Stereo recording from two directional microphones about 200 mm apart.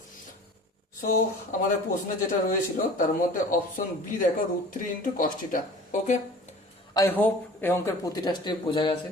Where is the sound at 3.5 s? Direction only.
40° left (ahead or behind).